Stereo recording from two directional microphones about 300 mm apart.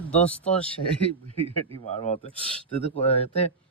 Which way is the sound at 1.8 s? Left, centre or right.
Left.